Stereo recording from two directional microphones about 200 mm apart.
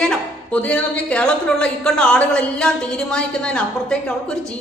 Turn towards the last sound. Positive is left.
turn(degrees=5)  # may be behind; listen again after turning